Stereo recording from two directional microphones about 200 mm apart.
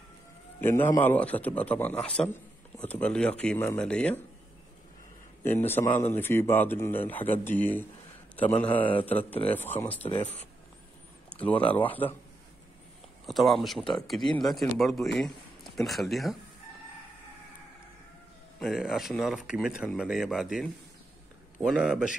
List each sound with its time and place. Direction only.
0.6 s a man's voice: 10° left (ahead or behind)
5.4 s a man's voice: 10° left (ahead or behind)
8.5 s a man's voice: 25° left (ahead or behind)
9.5 s a man's voice: 10° left (ahead or behind)
10.0 s speech: 30° left (ahead or behind)
11.4 s a man's voice: 5° left (ahead or behind)
13.3 s speech: centre (ahead or behind)
18.6 s speech: centre (ahead or behind)